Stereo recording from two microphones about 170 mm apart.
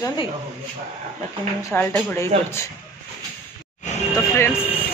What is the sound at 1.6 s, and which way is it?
Speech, 15° left (ahead or behind).